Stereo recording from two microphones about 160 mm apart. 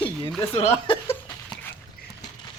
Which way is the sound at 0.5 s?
40° left (ahead or behind).